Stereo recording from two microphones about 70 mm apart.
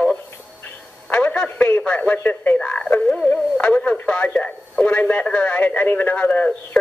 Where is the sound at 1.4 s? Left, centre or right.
Left.